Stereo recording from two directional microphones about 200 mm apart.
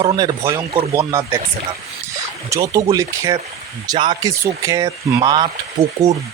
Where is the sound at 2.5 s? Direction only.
15° right (ahead or behind).